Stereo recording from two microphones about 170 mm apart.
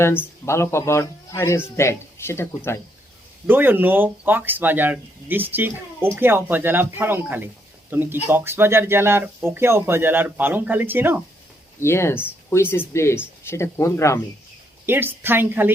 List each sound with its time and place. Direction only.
0.0 s speech: 15° left (ahead or behind)
3.4 s speech: 10° right (ahead or behind)
11.8 s speech: 15° left (ahead or behind)
14.8 s speech: 10° right (ahead or behind)